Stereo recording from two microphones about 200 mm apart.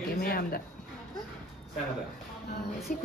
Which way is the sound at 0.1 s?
45° left (ahead or behind).